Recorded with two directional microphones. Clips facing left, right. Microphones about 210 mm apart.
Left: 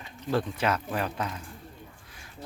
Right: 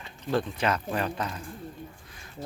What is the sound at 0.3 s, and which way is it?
Speech, 5° left (ahead or behind).